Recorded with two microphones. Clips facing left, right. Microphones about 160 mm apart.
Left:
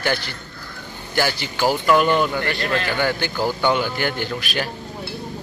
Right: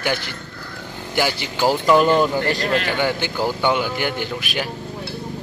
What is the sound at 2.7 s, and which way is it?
A man's voice, 20° right (ahead or behind).